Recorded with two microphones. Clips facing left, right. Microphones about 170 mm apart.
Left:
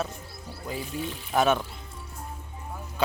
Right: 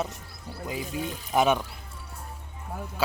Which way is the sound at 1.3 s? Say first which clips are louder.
Even; 15° right (ahead or behind).